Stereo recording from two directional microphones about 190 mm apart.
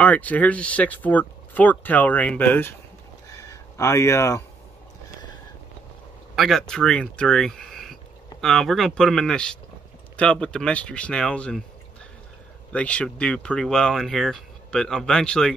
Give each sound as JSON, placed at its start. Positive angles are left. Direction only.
{"t": 0.0, "sound": "speech", "side_deg": 10}
{"t": 3.3, "sound": "a sound", "side_deg": 15}
{"t": 6.3, "sound": "speech", "side_deg": 0}
{"t": 12.7, "sound": "speech", "side_deg": 5}